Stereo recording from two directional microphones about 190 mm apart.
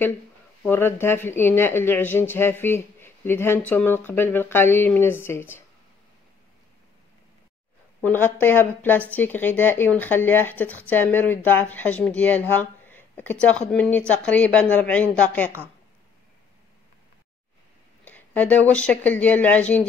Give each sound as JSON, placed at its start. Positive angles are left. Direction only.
{"t": 0.7, "sound": "speech", "side_deg": 10}
{"t": 8.0, "sound": "speech", "side_deg": 10}
{"t": 18.0, "sound": "speech", "side_deg": 10}